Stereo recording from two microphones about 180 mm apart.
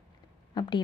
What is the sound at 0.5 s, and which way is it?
Speech, 25° left (ahead or behind).